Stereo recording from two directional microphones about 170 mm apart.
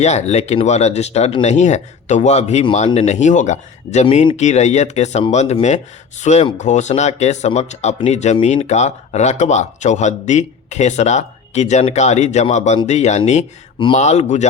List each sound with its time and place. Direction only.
0.0 s speech: 40° left (ahead or behind)